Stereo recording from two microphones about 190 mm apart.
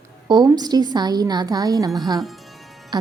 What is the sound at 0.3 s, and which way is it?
A woman's voice, 20° right (ahead or behind).